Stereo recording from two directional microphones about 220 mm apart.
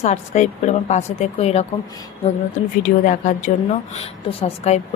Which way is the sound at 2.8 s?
35° left (ahead or behind).